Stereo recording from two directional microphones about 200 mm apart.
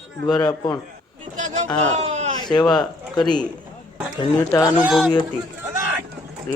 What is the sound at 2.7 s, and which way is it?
Speech, 20° left (ahead or behind).